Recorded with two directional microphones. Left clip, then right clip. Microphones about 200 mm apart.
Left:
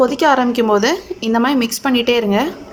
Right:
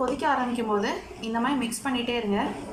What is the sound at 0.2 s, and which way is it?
A woman's voice, 50° left (ahead or behind).